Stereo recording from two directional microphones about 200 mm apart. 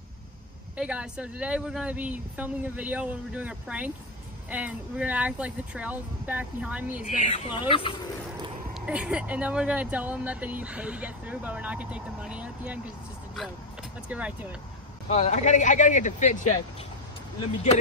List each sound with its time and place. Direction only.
0.7 s speech: 5° right (ahead or behind)
7.1 s speech: 35° left (ahead or behind)
7.4 s speech: 25° left (ahead or behind)
8.7 s speech: 5° right (ahead or behind)
14.0 s speech: 5° right (ahead or behind)
15.0 s speech: 35° left (ahead or behind)